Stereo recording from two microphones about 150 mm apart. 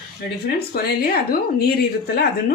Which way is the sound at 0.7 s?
90° left.